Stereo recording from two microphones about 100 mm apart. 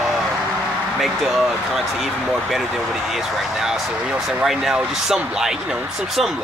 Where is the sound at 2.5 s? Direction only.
5° right (ahead or behind).